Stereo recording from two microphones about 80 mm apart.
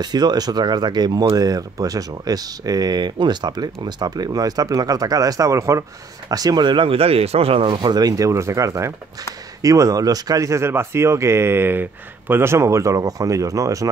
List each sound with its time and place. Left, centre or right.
0.0 s speech: right
6.2 s speech: right